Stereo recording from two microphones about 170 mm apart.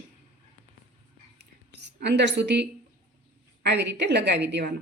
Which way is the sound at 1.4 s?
85° right.